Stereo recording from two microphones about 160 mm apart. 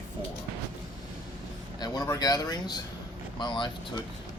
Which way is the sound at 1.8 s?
25° left (ahead or behind).